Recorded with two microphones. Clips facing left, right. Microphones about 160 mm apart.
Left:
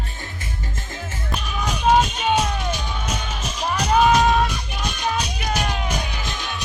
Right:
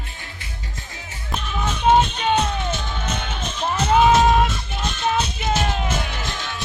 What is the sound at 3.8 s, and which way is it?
Music, 25° right (ahead or behind).